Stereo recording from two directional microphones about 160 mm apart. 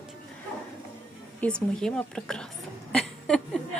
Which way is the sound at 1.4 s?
5° left (ahead or behind).